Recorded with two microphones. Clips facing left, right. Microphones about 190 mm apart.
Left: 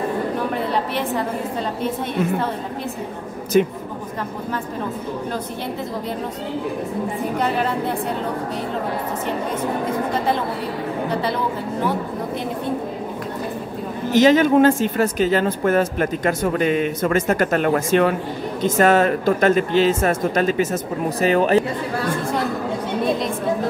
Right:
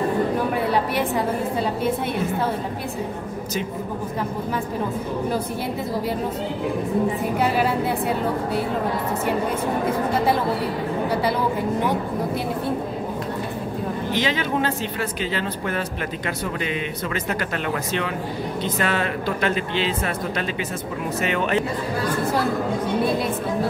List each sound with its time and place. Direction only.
0.7 s a woman's voice: 10° right (ahead or behind)
3.5 s speech: 60° left (ahead or behind)
7.3 s a woman's voice: 5° right (ahead or behind)
14.1 s speech: 45° left (ahead or behind)